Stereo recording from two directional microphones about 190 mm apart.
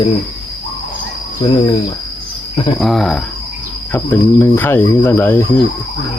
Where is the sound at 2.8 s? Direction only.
Centre (ahead or behind).